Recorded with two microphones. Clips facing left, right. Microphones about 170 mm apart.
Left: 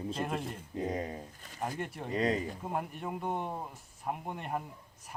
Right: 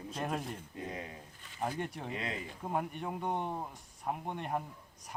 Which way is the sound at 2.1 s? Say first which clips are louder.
Left 9 dB; 40° left (ahead or behind).